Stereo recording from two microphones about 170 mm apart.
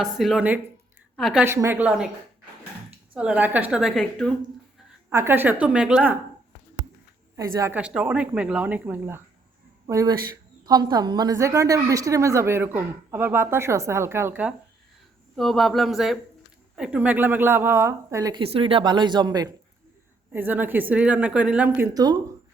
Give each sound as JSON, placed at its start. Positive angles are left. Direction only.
{"t": 0.0, "sound": "a woman's voice", "side_deg": 0}
{"t": 1.5, "sound": "a woman's voice", "side_deg": -15}
{"t": 3.2, "sound": "a woman's voice", "side_deg": -10}
{"t": 5.1, "sound": "a woman's voice", "side_deg": -15}
{"t": 7.3, "sound": "a woman's voice", "side_deg": -20}
{"t": 15.4, "sound": "a woman's voice", "side_deg": 0}
{"t": 18.5, "sound": "speech", "side_deg": -30}
{"t": 20.3, "sound": "a woman's voice", "side_deg": -10}
{"t": 21.9, "sound": "speech", "side_deg": -25}